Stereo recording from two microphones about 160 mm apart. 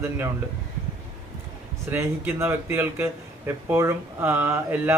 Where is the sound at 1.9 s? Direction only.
15° right (ahead or behind).